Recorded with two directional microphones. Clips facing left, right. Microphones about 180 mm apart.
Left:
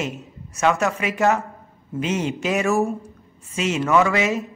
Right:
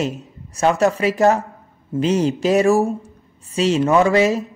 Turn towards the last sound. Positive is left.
turn(degrees=-35)  # may be behind; listen again after turning